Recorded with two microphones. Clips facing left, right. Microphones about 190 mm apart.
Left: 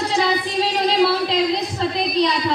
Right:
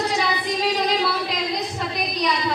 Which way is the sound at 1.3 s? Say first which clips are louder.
Left 6 dB; 30° left (ahead or behind).